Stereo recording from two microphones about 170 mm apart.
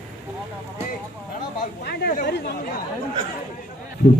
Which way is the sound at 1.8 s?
70° left (ahead or behind).